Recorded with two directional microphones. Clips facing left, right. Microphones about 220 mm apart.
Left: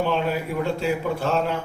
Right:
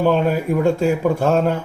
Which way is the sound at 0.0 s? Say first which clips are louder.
Right 6 dB; 45° right (ahead or behind).